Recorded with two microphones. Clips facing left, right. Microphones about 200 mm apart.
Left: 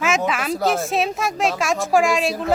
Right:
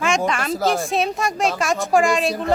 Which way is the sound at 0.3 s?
5° left (ahead or behind).